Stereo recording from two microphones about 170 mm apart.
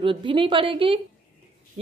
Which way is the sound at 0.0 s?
30° right (ahead or behind).